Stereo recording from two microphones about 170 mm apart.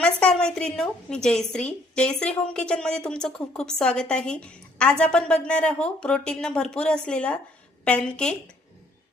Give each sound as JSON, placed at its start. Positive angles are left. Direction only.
{"t": 0.0, "sound": "a woman's voice", "side_deg": 5}